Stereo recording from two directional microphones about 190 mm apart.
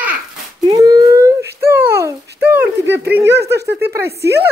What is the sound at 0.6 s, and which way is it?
Speech, 20° right (ahead or behind).